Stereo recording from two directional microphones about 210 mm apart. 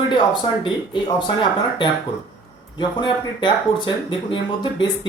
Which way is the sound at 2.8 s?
20° left (ahead or behind).